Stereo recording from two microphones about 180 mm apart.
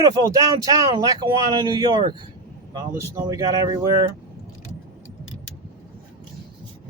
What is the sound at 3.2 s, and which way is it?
Speech, 20° right (ahead or behind).